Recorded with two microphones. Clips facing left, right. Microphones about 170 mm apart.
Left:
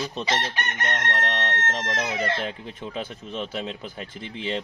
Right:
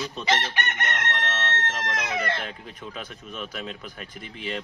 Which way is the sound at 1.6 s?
35° left (ahead or behind).